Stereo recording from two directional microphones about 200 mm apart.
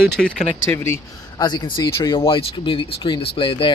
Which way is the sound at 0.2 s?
Centre (ahead or behind).